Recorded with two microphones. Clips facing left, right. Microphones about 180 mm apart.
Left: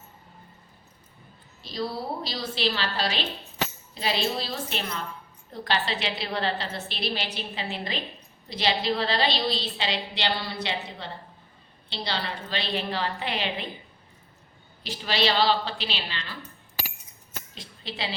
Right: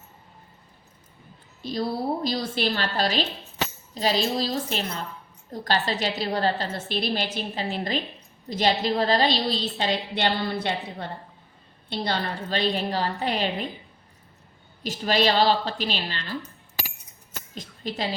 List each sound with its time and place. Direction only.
1.6 s a woman's voice: 50° right (ahead or behind)
14.8 s a woman's voice: 45° right (ahead or behind)
17.5 s a sound: 45° right (ahead or behind)